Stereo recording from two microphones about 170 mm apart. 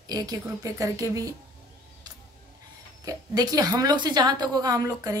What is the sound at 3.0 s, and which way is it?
A woman's voice, 20° right (ahead or behind).